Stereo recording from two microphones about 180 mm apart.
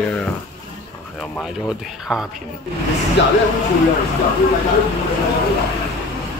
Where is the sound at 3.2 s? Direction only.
80° left.